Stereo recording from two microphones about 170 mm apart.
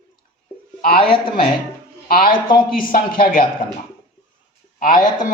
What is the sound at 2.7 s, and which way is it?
Speech, 55° left (ahead or behind).